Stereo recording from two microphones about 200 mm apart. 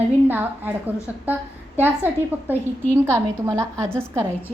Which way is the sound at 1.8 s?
10° right (ahead or behind).